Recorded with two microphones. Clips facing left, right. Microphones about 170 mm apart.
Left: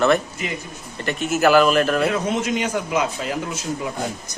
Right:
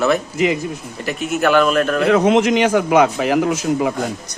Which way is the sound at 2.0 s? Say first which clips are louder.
Right 8 dB; 90° right.